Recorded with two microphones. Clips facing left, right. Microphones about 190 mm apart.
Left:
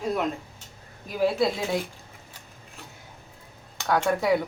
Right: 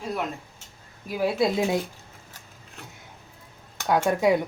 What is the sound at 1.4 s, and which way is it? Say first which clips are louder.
Speech: right 2 dB; 20° right (ahead or behind).